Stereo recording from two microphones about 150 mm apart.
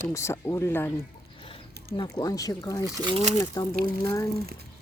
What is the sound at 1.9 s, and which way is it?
Speech, 25° left (ahead or behind).